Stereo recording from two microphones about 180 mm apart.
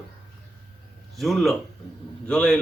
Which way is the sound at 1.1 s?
Centre (ahead or behind).